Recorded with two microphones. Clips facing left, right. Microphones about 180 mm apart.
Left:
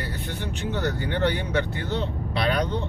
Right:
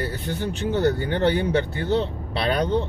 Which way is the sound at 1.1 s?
35° right (ahead or behind).